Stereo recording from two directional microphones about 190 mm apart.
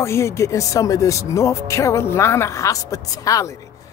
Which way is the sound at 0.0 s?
15° left (ahead or behind).